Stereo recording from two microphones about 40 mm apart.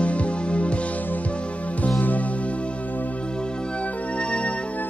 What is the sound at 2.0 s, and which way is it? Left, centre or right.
Music, left.